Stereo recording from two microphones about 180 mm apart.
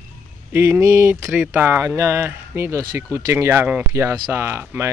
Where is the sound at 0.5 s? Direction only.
15° right (ahead or behind).